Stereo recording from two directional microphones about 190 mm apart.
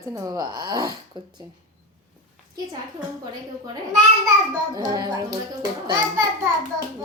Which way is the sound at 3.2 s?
20° right (ahead or behind).